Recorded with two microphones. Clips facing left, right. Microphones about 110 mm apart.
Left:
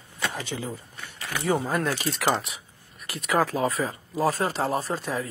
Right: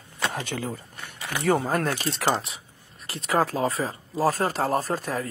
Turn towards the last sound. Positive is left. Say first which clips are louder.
# right 2 dB
turn(degrees=-45)  # may be behind; listen again after turning